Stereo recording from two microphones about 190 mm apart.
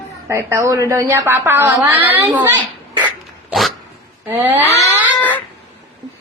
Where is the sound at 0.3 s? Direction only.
15° right (ahead or behind).